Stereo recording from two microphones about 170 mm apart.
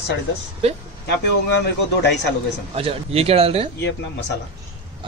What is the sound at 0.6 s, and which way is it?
Speech, 35° right (ahead or behind).